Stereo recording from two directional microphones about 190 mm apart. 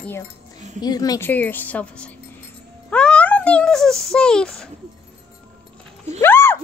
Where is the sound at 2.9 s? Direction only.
5° left (ahead or behind).